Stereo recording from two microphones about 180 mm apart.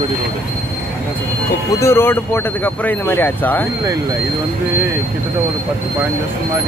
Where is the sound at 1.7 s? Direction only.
15° left (ahead or behind).